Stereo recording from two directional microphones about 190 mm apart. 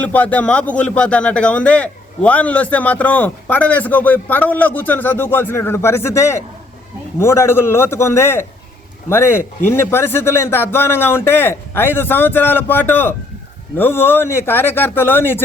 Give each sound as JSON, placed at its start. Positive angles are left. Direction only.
{"t": 0.0, "sound": "a man's voice", "side_deg": 10}